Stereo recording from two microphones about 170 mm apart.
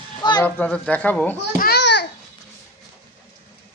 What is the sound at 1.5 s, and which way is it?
Babbling, 70° left (ahead or behind).